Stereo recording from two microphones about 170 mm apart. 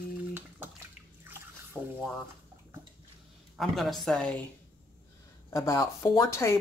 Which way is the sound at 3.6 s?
Centre (ahead or behind).